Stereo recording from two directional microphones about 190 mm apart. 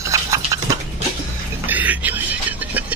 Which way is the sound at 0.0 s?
15° right (ahead or behind).